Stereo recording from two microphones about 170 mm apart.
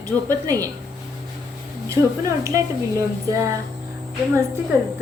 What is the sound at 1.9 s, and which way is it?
A woman's voice, 20° right (ahead or behind).